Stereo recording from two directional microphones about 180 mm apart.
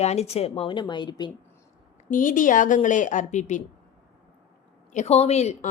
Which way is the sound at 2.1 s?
45° left (ahead or behind).